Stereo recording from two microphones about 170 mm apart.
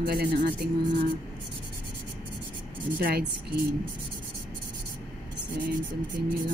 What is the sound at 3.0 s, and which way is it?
Speech, 70° right (ahead or behind).